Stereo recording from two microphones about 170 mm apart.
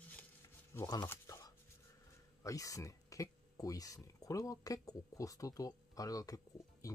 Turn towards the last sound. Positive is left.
turn(degrees=20)  # may be behind; listen again after turning